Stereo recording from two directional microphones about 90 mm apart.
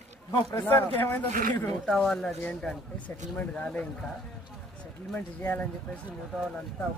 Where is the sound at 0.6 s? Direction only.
25° left (ahead or behind).